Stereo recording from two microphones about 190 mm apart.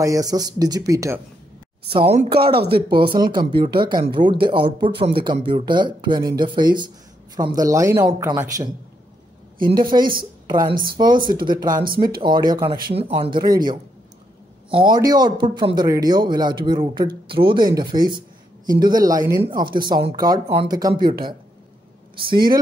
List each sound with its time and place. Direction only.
0.0 s speech: 20° right (ahead or behind)
2.0 s speech: 30° right (ahead or behind)
2.4 s speech: 55° right (ahead or behind)
2.7 s a woman's voice: 25° right (ahead or behind)
14.7 s speech: 25° right (ahead or behind)